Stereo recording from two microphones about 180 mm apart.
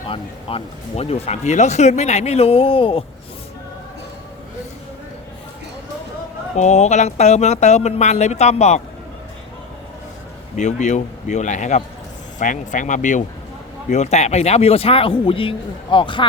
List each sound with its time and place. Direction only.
0.1 s speech: 30° left (ahead or behind)
6.6 s speech: 40° left (ahead or behind)
10.6 s speech: 40° left (ahead or behind)